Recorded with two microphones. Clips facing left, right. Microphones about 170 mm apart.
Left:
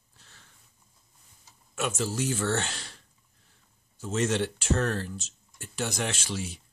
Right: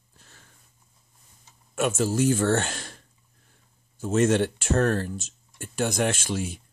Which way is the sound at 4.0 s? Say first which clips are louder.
Right 6 dB; 50° right (ahead or behind).